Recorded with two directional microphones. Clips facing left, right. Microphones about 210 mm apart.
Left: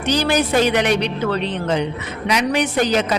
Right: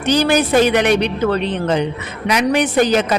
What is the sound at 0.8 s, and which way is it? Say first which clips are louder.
Speech: right 3 dB; 55° right (ahead or behind).